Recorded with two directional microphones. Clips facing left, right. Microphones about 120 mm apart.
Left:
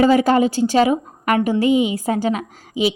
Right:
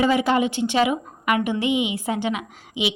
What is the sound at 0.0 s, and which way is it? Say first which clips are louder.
A woman's voice: left 5 dB; 40° left (ahead or behind).